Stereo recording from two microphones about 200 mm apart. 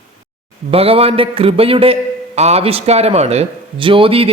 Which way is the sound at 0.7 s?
30° right (ahead or behind).